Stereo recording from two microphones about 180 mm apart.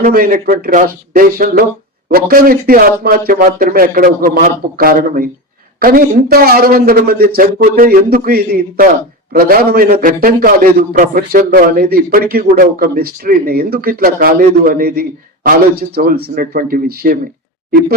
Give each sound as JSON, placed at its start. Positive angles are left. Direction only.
{"t": 0.0, "sound": "a man's voice", "side_deg": -50}